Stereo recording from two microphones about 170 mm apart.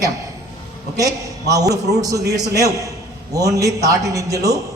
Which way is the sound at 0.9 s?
20° right (ahead or behind).